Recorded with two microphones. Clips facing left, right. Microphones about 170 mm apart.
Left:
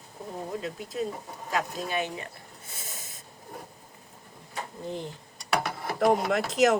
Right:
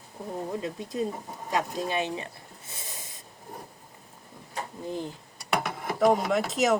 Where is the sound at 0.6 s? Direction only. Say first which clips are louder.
Right 2 dB; 25° right (ahead or behind).